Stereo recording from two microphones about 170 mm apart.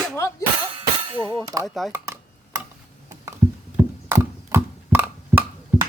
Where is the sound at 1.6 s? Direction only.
Centre (ahead or behind).